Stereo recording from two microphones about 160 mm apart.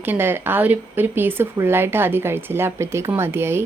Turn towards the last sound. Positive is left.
turn(degrees=-15)  # may be behind; listen again after turning